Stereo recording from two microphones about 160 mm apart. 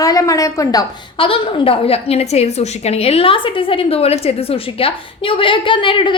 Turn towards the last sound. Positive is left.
turn(degrees=30)  # may be behind; listen again after turning